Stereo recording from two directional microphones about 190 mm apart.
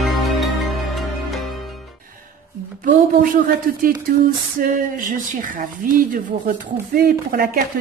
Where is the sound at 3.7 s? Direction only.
50° right (ahead or behind).